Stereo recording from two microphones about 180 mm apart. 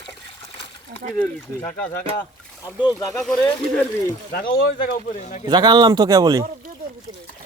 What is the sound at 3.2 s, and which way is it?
Speech, 5° left (ahead or behind).